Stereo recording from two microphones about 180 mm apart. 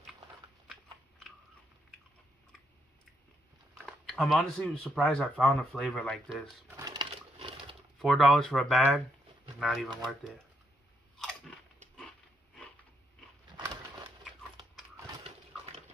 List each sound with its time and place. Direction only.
3.7 s speech: centre (ahead or behind)
6.8 s a sound: 20° right (ahead or behind)
7.3 s wild animals: 30° right (ahead or behind)
8.0 s speech: centre (ahead or behind)
11.2 s biting: 5° left (ahead or behind)